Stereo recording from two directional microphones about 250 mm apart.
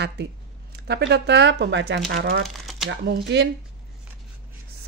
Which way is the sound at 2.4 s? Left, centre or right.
Centre.